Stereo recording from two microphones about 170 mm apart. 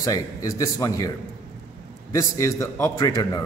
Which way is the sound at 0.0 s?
20° left (ahead or behind).